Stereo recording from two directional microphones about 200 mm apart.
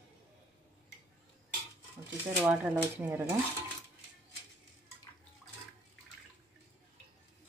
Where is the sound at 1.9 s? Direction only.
10° right (ahead or behind).